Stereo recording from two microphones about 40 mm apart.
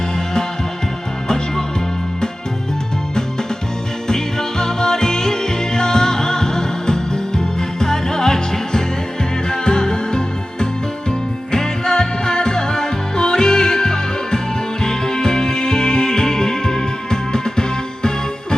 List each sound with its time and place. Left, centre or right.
4.1 s music: centre